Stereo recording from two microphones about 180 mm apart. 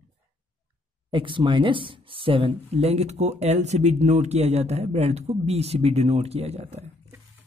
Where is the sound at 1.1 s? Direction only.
25° right (ahead or behind).